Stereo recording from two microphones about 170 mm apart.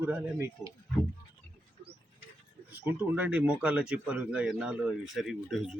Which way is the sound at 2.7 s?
10° right (ahead or behind).